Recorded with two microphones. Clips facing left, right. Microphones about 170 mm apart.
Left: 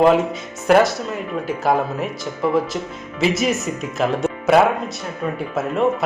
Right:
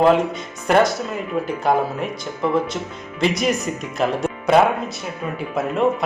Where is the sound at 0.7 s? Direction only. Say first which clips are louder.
Left 2 dB; centre (ahead or behind).